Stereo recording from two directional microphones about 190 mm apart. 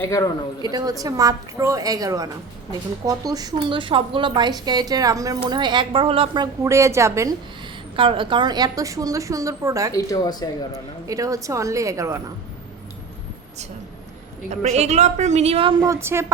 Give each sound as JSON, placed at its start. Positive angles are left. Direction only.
{"t": 0.0, "sound": "speech", "side_deg": 15}
{"t": 0.6, "sound": "speech", "side_deg": -20}
{"t": 7.9, "sound": "a woman's voice", "side_deg": -25}
{"t": 9.9, "sound": "speech", "side_deg": 20}
{"t": 11.0, "sound": "a woman's voice", "side_deg": -15}
{"t": 14.5, "sound": "a woman's voice", "side_deg": -35}
{"t": 15.8, "sound": "a woman's voice", "side_deg": -15}